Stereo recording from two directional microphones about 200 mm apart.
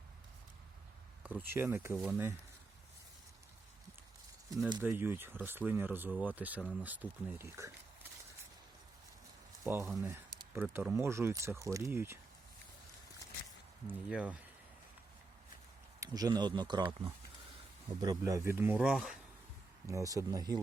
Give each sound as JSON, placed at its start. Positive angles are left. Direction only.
{"t": 1.2, "sound": "speech", "side_deg": -10}
{"t": 4.8, "sound": "speech", "side_deg": -10}
{"t": 9.6, "sound": "speech", "side_deg": -10}
{"t": 13.8, "sound": "speech", "side_deg": -5}
{"t": 16.0, "sound": "speech", "side_deg": -20}
{"t": 19.9, "sound": "speech", "side_deg": -15}